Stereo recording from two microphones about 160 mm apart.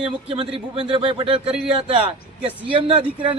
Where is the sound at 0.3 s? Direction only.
35° right (ahead or behind).